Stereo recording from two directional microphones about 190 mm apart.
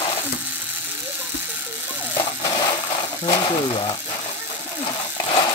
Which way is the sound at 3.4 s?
25° left (ahead or behind).